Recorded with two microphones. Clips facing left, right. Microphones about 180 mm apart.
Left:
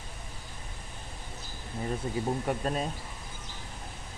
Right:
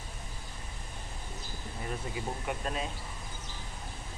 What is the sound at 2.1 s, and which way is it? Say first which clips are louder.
Speech: left 6 dB; 40° left (ahead or behind).